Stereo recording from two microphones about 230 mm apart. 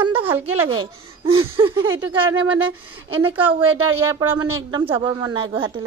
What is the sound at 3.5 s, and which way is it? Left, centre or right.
A woman's voice, right.